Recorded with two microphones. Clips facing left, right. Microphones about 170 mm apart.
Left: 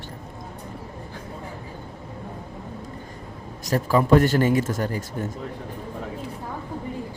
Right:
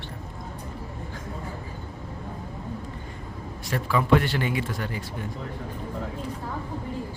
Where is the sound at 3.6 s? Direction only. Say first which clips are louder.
Left 4 dB; 40° left (ahead or behind).